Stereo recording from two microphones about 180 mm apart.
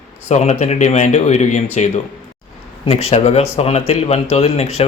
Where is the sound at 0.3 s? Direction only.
40° left (ahead or behind).